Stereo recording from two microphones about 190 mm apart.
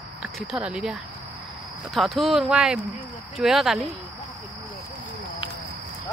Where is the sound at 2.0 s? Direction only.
Centre (ahead or behind).